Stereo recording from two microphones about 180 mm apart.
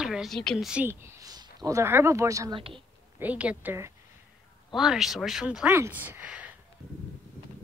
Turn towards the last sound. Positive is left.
turn(degrees=-10)  # may be behind; listen again after turning